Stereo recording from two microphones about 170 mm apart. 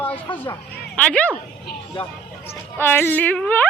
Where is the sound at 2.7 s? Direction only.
15° left (ahead or behind).